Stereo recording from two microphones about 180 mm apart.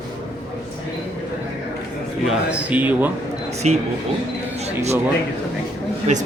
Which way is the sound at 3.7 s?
40° right (ahead or behind).